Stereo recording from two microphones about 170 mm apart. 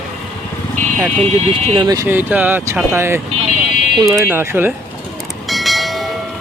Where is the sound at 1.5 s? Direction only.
30° right (ahead or behind); by 4.7 s 15° right (ahead or behind).